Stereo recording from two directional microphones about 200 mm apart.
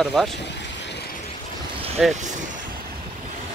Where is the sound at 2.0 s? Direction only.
Centre (ahead or behind).